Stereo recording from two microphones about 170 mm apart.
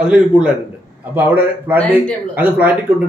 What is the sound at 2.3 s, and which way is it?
Speech, 10° right (ahead or behind).